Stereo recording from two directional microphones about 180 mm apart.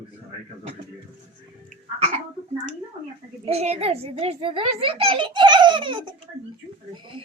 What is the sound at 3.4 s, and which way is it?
A child's voice, 35° right (ahead or behind).